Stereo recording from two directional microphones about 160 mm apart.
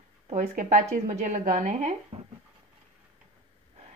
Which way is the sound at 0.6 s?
50° right (ahead or behind).